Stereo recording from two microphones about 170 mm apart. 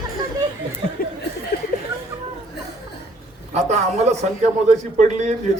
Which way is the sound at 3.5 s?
40° right (ahead or behind).